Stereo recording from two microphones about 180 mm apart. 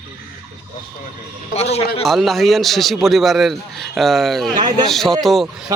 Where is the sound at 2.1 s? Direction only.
Centre (ahead or behind).